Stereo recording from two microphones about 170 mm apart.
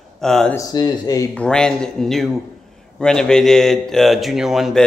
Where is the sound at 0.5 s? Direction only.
20° left (ahead or behind).